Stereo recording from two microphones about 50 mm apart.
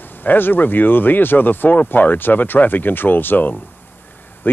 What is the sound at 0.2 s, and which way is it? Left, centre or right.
Speech, left.